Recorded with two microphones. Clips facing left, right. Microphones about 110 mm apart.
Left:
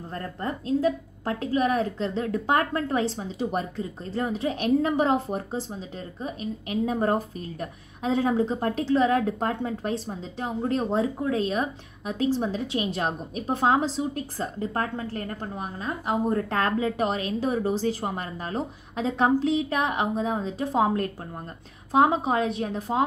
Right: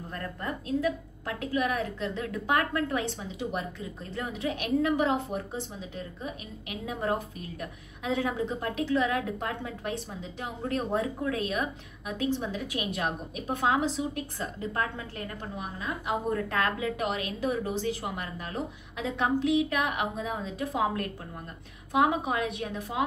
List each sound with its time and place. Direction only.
0.1 s a woman's voice: 35° left (ahead or behind)